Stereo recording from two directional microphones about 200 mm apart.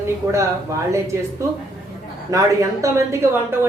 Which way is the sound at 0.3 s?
15° right (ahead or behind).